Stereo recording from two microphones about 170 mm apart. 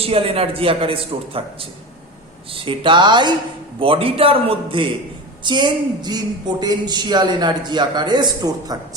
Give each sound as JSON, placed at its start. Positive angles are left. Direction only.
{"t": 0.0, "sound": "a woman's voice", "side_deg": -35}